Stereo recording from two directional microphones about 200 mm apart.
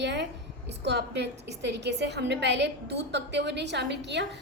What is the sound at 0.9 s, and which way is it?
A woman's voice, 55° right (ahead or behind).